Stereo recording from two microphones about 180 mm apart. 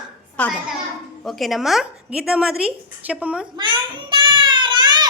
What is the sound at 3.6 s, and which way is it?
Child singing, 25° right (ahead or behind).